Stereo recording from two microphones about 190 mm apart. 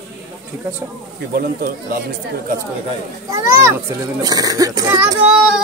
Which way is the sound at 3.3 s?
15° right (ahead or behind).